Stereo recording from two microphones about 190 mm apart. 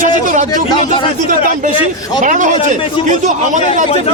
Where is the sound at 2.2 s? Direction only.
40° right (ahead or behind).